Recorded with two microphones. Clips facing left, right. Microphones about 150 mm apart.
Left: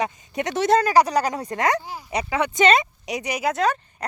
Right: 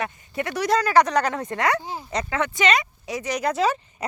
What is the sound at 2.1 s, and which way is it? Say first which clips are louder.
Speech: left 2 dB; 10° left (ahead or behind).